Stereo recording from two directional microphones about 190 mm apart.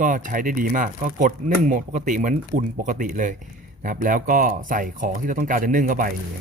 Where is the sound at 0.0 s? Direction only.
45° right (ahead or behind).